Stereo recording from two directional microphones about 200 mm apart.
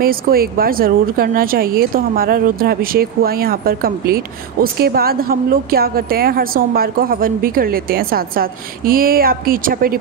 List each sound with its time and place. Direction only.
0.0 s speech: 45° right (ahead or behind)